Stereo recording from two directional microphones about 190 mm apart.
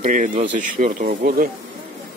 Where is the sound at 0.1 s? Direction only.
40° right (ahead or behind).